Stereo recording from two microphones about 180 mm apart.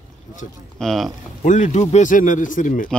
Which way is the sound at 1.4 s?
40° left (ahead or behind).